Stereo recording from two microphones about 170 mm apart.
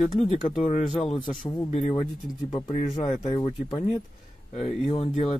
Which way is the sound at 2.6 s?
40° left (ahead or behind).